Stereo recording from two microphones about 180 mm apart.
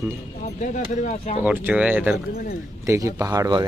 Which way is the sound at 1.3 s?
10° right (ahead or behind).